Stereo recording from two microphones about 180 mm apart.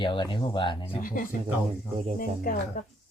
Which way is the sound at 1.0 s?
50° left (ahead or behind).